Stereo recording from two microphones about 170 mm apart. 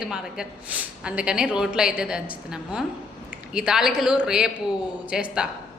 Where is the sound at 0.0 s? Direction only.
5° right (ahead or behind).